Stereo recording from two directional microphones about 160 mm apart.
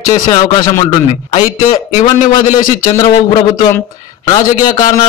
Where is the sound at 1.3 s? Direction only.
55° left (ahead or behind).